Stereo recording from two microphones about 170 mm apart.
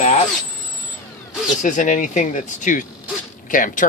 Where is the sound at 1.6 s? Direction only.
50° left (ahead or behind).